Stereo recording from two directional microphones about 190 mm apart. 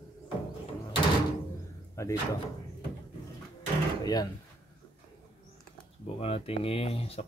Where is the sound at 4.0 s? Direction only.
20° left (ahead or behind).